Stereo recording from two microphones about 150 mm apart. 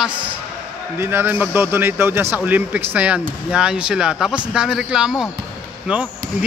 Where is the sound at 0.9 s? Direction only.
15° right (ahead or behind).